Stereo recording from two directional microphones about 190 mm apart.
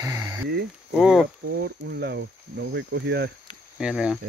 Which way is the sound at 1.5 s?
60° right (ahead or behind).